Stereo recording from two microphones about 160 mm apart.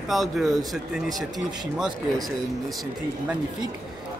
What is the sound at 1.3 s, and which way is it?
Speech, 25° right (ahead or behind).